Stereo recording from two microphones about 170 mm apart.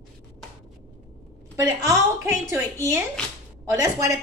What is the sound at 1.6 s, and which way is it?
Speech, 15° right (ahead or behind).